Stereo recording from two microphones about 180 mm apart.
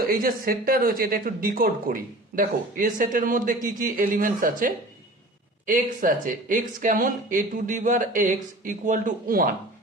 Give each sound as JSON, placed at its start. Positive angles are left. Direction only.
{"t": 0.1, "sound": "speech", "side_deg": -55}